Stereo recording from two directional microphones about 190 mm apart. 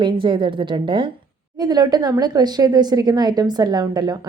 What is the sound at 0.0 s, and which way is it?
A woman's voice, 25° right (ahead or behind).